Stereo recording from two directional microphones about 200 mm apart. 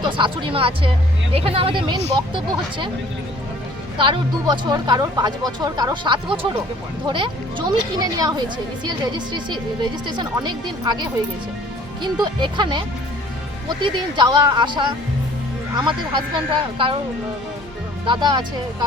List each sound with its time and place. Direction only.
0.0 s speech: 25° right (ahead or behind)
3.9 s speech: 25° right (ahead or behind)
12.2 s speech: 20° right (ahead or behind)
18.0 s speech: 25° right (ahead or behind)